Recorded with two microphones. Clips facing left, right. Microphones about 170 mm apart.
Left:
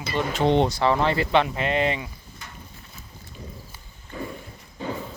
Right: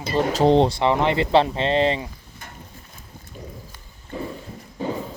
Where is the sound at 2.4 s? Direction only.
50° right (ahead or behind).